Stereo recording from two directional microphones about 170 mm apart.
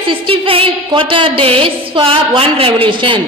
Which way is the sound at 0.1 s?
35° right (ahead or behind).